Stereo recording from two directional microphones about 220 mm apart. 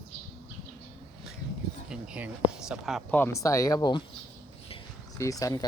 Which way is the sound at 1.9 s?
5° right (ahead or behind).